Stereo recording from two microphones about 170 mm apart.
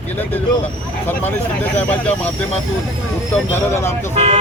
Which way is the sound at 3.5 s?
15° left (ahead or behind).